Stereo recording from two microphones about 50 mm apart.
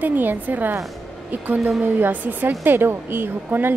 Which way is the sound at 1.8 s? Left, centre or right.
Right.